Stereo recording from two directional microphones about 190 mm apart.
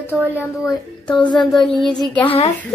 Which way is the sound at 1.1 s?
25° left (ahead or behind).